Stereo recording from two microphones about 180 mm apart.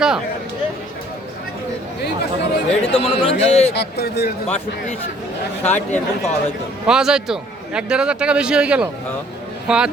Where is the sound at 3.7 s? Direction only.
65° left (ahead or behind).